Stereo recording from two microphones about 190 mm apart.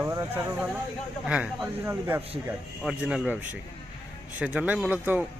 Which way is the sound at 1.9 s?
15° right (ahead or behind).